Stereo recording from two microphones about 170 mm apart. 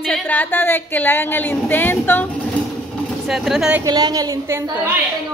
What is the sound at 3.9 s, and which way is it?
A woman's voice, 25° right (ahead or behind).